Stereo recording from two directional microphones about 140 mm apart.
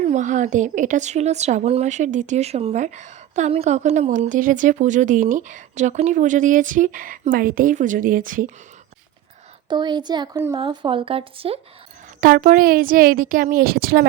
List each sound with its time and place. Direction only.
0.0 s speech: 60° right (ahead or behind); by 8.4 s 75° right (ahead or behind)
9.6 s speech: 30° right (ahead or behind)
12.2 s a woman's voice: 85° right